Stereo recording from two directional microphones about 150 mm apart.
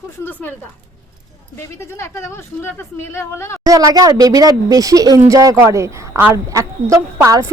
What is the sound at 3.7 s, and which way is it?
A woman's voice, 25° right (ahead or behind).